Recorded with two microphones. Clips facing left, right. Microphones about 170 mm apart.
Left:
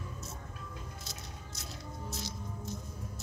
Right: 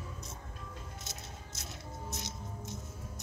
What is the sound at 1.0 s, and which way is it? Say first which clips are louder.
Music: even; 20° right (ahead or behind).